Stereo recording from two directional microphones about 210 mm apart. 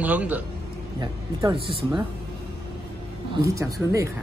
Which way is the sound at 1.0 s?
25° right (ahead or behind).